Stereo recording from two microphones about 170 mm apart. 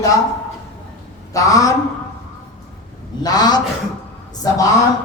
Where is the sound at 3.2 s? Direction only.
25° left (ahead or behind).